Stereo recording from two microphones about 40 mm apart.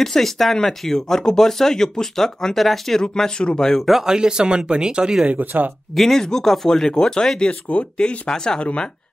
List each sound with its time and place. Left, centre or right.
0.0 s speech: centre
3.0 s speech: centre
4.0 s speech: centre
5.2 s speech: right
5.9 s speech: centre
7.7 s speech: left
8.3 s speech: centre